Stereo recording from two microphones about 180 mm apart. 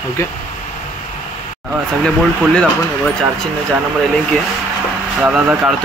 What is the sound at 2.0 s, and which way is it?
Speech, 5° left (ahead or behind).